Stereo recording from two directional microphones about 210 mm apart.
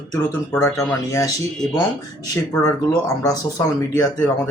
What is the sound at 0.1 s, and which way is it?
Speech, 10° left (ahead or behind).